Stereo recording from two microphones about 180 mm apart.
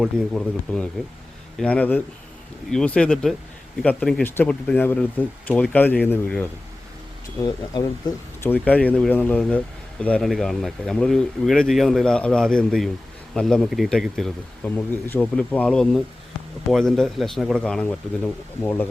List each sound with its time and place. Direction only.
0.0 s speech: 5° left (ahead or behind)
7.4 s speech: 20° left (ahead or behind)
8.4 s speech: 10° left (ahead or behind)